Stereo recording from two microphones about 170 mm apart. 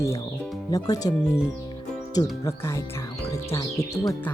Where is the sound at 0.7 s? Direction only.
20° left (ahead or behind).